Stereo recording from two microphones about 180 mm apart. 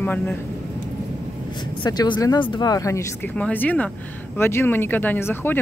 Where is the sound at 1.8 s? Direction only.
25° left (ahead or behind).